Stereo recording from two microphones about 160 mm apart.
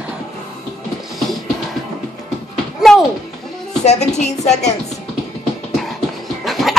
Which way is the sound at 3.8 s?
45° left (ahead or behind).